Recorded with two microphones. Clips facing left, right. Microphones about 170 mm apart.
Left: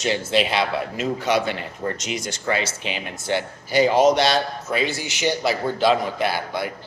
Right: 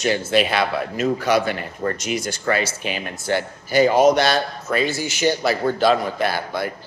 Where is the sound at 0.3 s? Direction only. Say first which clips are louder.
Right 1 dB; 25° left (ahead or behind).